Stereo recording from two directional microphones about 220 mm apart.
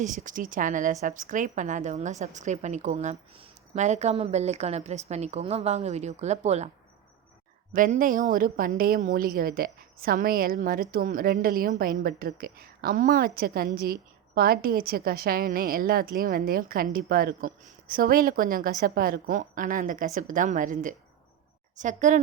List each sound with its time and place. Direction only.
0.0 s a woman's voice: 35° right (ahead or behind)
7.7 s a woman's voice: 40° right (ahead or behind)